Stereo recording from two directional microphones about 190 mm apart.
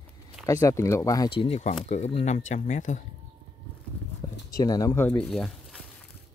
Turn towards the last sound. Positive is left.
turn(degrees=0)  # may be behind; listen again after turning